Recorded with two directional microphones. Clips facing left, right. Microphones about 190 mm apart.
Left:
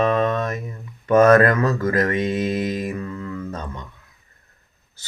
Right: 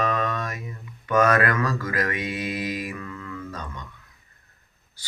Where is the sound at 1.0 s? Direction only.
40° left (ahead or behind).